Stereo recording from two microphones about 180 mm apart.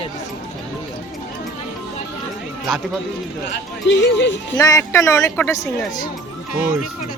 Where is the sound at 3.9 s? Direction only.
85° left.